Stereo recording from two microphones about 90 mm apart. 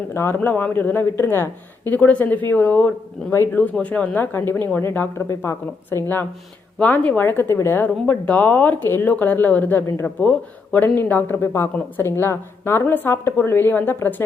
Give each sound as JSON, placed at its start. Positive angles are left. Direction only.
{"t": 0.1, "sound": "speech", "side_deg": 25}
{"t": 0.3, "sound": "speech", "side_deg": 15}
{"t": 3.3, "sound": "speech", "side_deg": 30}
{"t": 3.6, "sound": "speech", "side_deg": 15}
{"t": 6.7, "sound": "speech", "side_deg": 15}